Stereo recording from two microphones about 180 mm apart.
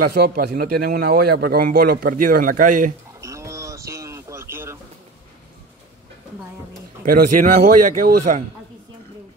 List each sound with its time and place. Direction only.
0.0 s speech: 60° right (ahead or behind)
3.2 s a sound: 15° right (ahead or behind)
7.1 s speech: 55° right (ahead or behind)